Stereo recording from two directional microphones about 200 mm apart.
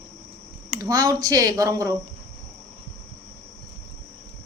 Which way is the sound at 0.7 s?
15° right (ahead or behind).